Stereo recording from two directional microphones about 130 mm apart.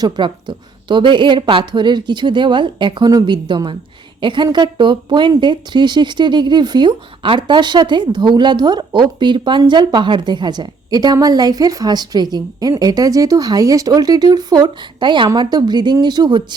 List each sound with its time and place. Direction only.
0.0 s a woman's voice: 35° right (ahead or behind)